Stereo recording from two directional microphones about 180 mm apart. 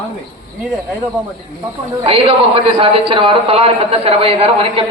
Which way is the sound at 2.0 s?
30° right (ahead or behind).